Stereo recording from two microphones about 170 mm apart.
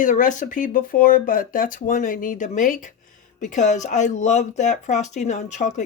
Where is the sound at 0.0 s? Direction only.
50° left (ahead or behind).